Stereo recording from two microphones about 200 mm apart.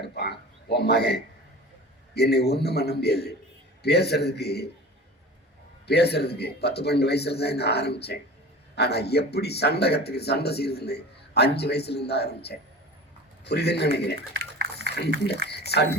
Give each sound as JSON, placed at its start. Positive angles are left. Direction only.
{"t": 0.0, "sound": "a man's voice", "side_deg": 55}
{"t": 5.9, "sound": "speech", "side_deg": 55}
{"t": 15.4, "sound": "a sound", "side_deg": 55}